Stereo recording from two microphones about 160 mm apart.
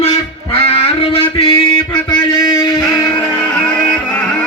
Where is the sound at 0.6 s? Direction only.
35° left (ahead or behind).